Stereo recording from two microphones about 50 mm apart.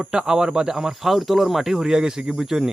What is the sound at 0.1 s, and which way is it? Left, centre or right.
Speech, centre.